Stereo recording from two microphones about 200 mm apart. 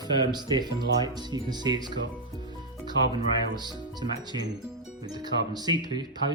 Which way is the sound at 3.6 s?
20° right (ahead or behind).